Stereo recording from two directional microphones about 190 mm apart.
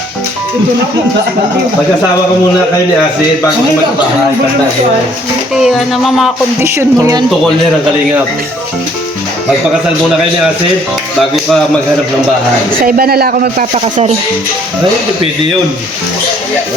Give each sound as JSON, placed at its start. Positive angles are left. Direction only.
{"t": 5.5, "sound": "music", "side_deg": 0}
{"t": 6.6, "sound": "speech", "side_deg": -15}
{"t": 12.8, "sound": "speech", "side_deg": -50}
{"t": 13.7, "sound": "speech", "side_deg": -30}